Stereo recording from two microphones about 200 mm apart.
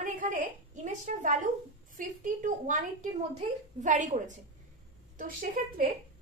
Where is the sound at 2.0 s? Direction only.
40° right (ahead or behind).